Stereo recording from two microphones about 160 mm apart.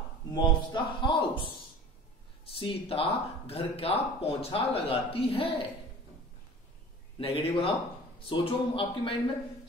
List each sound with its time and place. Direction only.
0.3 s speech: 30° left (ahead or behind)
7.2 s speech: 35° left (ahead or behind)